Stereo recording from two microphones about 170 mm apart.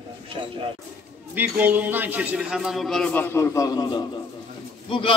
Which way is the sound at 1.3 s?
10° right (ahead or behind).